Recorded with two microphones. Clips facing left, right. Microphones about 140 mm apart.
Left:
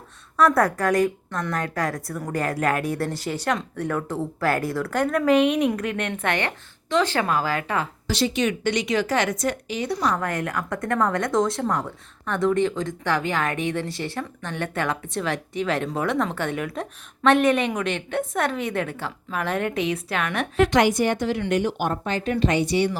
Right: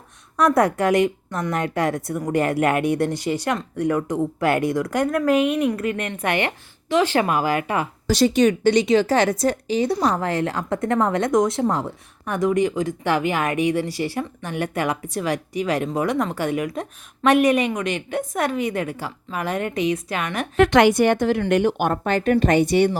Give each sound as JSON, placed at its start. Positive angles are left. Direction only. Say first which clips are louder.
{"t": 0.3, "sound": "a woman's voice", "louder": "right 2 dB", "side_deg": -20}
{"t": 1.3, "sound": "a woman's voice", "louder": "right 3 dB", "side_deg": -10}
{"t": 1.5, "sound": "a woman's voice", "louder": "right 5 dB", "side_deg": -25}
{"t": 8.0, "sound": "a woman's voice", "louder": "right 8 dB", "side_deg": -40}
{"t": 20.6, "sound": "a woman's voice", "louder": "right 4 dB", "side_deg": -65}